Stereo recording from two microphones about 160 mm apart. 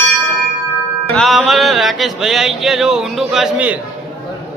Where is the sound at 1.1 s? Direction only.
Centre (ahead or behind).